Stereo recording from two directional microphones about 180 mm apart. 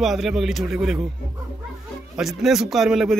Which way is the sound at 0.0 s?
Centre (ahead or behind).